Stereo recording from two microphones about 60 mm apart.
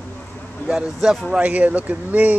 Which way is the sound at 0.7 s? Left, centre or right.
Centre.